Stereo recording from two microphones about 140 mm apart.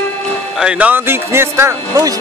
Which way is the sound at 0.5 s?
5° right (ahead or behind).